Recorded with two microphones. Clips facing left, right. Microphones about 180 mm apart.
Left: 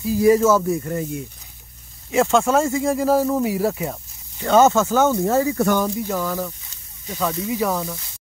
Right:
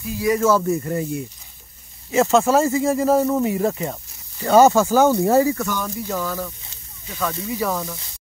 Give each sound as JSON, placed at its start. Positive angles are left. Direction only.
{"t": 0.0, "sound": "speech", "side_deg": 30}
{"t": 0.4, "sound": "speech", "side_deg": 5}
{"t": 6.0, "sound": "speech", "side_deg": 10}